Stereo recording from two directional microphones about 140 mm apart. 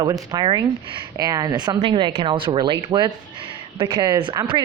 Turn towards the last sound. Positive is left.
turn(degrees=-30)  # may be behind; listen again after turning